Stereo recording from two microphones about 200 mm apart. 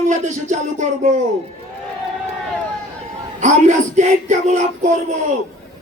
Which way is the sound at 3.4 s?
35° right (ahead or behind).